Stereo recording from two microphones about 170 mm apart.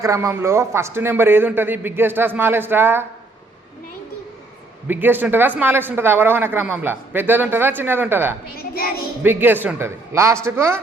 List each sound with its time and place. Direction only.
0.0 s speech: 20° right (ahead or behind)
4.9 s speech: 10° right (ahead or behind)
8.5 s a child's voice: 60° left (ahead or behind)
9.2 s speech: 10° right (ahead or behind)